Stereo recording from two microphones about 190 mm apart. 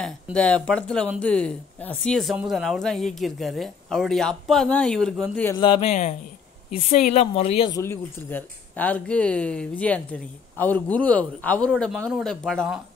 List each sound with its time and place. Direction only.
0.0 s speech: 5° left (ahead or behind)
5.4 s mantra: 20° left (ahead or behind); by 6.1 s 35° left (ahead or behind)
6.7 s speech: 40° left (ahead or behind)
7.7 s speech: 15° left (ahead or behind)